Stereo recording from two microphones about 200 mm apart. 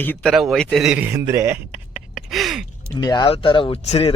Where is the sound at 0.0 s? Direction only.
5° left (ahead or behind); by 1.5 s 15° right (ahead or behind).